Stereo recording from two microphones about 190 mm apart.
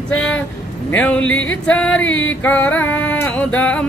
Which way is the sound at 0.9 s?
5° left (ahead or behind).